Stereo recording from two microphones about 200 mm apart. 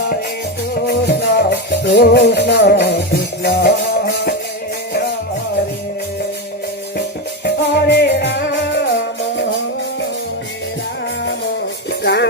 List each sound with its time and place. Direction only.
0.9 s music: 55° left (ahead or behind)
7.4 s music: 55° left (ahead or behind)
11.9 s a sound: 55° left (ahead or behind)